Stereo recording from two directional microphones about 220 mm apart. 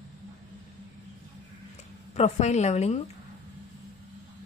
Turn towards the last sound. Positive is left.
turn(degrees=30)  # may be behind; listen again after turning